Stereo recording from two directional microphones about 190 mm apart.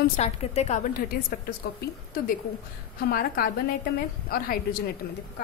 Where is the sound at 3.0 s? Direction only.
50° left (ahead or behind).